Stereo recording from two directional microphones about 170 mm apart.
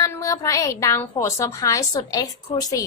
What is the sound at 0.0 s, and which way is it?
A woman's voice, 20° left (ahead or behind).